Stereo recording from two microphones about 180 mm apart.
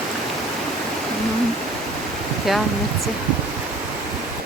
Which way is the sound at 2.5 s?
Centre (ahead or behind).